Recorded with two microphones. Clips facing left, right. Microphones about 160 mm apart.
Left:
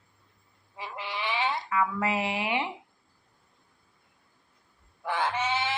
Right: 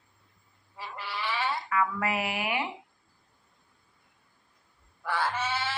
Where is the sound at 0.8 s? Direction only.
15° left (ahead or behind).